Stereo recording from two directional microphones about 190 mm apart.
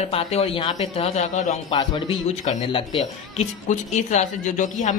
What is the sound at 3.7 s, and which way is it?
A woman's voice, 40° left (ahead or behind).